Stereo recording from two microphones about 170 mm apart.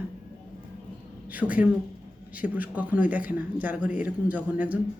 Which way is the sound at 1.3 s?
10° right (ahead or behind).